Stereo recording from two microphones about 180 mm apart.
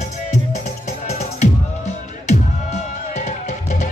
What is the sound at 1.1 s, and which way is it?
Music, 40° left (ahead or behind).